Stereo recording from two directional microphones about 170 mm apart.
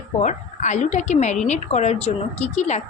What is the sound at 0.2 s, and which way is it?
Speech, 45° left (ahead or behind).